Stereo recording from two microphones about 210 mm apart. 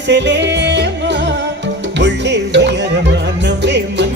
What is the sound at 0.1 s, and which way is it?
Music, 55° right (ahead or behind).